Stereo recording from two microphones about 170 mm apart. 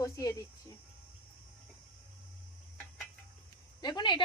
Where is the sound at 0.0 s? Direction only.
20° left (ahead or behind).